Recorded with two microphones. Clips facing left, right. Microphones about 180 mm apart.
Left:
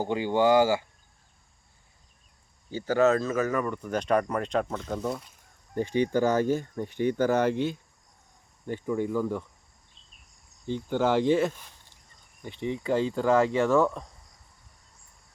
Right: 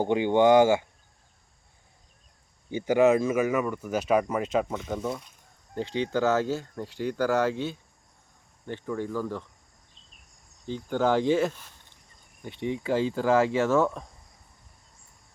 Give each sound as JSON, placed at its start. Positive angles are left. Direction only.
{"t": 0.0, "sound": "speech", "side_deg": -20}
{"t": 2.6, "sound": "speech", "side_deg": -15}
{"t": 5.7, "sound": "speech", "side_deg": 15}
{"t": 10.9, "sound": "speech", "side_deg": 5}